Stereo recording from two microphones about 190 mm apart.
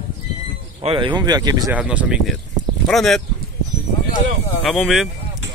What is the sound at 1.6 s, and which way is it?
Speech, 5° right (ahead or behind).